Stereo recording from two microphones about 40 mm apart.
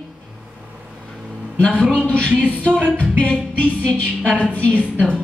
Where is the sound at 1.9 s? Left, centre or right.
Left.